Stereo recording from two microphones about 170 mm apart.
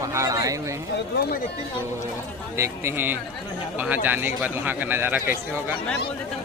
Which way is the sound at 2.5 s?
15° right (ahead or behind).